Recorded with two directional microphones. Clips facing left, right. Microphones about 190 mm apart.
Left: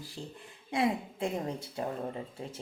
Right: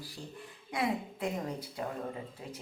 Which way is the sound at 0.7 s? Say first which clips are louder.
Left 3 dB; 25° left (ahead or behind).